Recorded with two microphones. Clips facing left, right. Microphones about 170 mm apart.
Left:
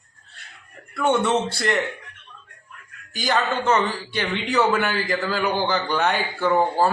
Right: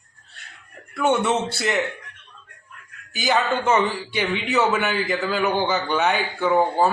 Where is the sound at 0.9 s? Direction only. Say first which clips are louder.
Even; 5° right (ahead or behind).